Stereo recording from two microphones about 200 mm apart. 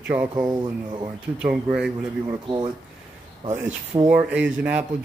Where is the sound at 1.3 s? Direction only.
5° right (ahead or behind).